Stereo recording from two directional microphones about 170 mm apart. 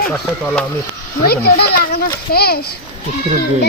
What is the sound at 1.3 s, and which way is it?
A child's voice, 65° left (ahead or behind).